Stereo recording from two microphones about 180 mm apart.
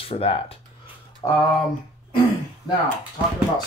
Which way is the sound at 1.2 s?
20° left (ahead or behind).